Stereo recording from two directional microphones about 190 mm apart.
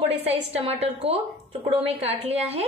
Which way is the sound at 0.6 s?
30° right (ahead or behind).